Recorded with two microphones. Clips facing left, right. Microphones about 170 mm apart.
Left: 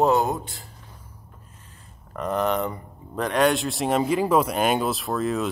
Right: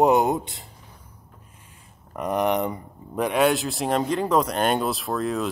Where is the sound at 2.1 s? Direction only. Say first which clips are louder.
Right 1 dB; 15° right (ahead or behind).